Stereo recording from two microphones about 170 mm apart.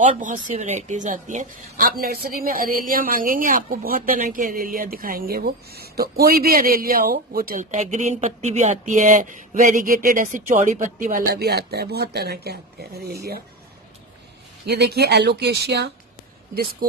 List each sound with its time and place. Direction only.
0.0 s a woman's voice: 45° right (ahead or behind)
7.7 s speech: 45° right (ahead or behind); by 13.4 s 65° right (ahead or behind)
14.7 s speech: 75° right (ahead or behind)